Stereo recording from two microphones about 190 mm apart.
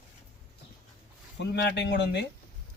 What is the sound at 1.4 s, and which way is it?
Speech, 65° left (ahead or behind).